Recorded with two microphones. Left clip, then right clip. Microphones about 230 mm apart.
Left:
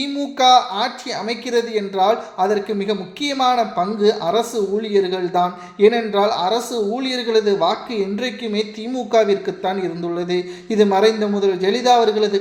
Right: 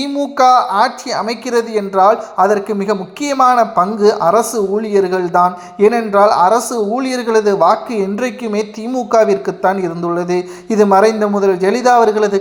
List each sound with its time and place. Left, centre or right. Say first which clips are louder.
0.0 s a woman's voice: right 5 dB; centre